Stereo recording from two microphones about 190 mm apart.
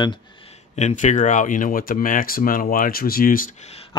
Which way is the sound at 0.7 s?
40° left (ahead or behind).